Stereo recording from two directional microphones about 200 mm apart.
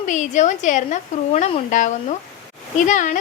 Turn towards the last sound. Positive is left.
turn(degrees=40)  # may be behind; listen again after turning